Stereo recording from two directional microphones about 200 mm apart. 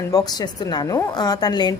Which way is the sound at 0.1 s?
20° left (ahead or behind).